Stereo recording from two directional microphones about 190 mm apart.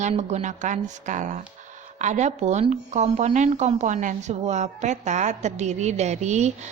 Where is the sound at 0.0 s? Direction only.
35° right (ahead or behind).